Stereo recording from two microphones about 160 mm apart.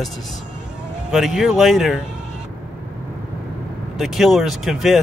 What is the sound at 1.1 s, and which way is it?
Speech, centre (ahead or behind).